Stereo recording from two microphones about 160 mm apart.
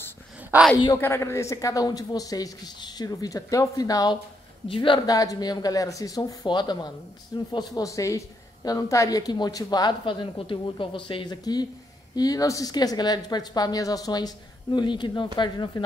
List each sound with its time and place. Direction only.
0.5 s a woman's voice: 5° right (ahead or behind)
0.9 s a woman's voice: 15° left (ahead or behind)